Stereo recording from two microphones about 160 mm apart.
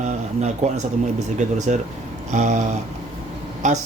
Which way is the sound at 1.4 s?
50° right (ahead or behind).